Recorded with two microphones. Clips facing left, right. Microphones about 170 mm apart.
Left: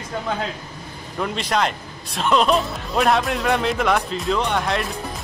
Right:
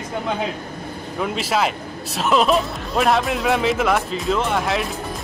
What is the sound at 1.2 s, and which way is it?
Speech, 5° right (ahead or behind).